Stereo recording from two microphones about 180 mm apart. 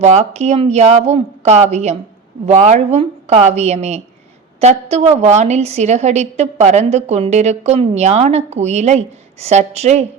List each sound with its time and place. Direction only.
0.0 s a woman's voice: 40° right (ahead or behind)